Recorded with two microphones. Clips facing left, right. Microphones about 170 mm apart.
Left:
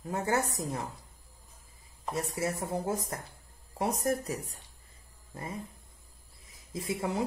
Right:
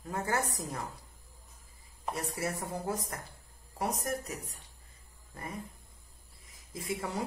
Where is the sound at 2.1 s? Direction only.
25° left (ahead or behind).